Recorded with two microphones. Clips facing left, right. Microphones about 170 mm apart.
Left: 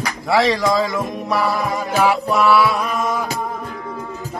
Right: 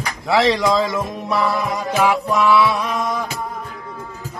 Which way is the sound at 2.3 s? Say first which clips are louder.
Even; centre (ahead or behind).